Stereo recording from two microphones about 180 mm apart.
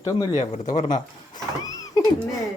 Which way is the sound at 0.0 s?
25° left (ahead or behind).